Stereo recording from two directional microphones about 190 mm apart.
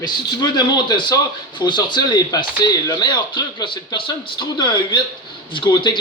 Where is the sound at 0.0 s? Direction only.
20° left (ahead or behind).